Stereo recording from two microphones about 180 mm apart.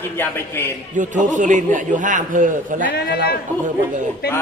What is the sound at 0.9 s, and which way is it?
A man's voice, 45° right (ahead or behind).